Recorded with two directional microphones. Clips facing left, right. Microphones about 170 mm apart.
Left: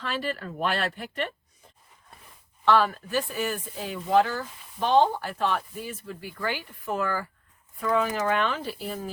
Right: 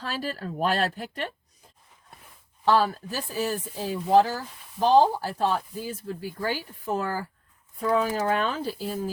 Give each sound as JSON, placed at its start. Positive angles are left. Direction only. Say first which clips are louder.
{"t": 0.0, "sound": "speech", "louder": "left 1 dB", "side_deg": -40}
{"t": 2.6, "sound": "speech", "louder": "even", "side_deg": -35}